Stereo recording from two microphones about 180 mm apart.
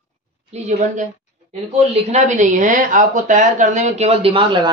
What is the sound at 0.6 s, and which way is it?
A woman's voice, 45° right (ahead or behind).